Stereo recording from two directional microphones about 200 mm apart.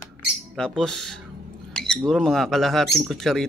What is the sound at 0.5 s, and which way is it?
A man's voice, centre (ahead or behind).